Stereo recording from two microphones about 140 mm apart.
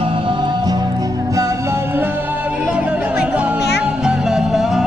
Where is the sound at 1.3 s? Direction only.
20° right (ahead or behind).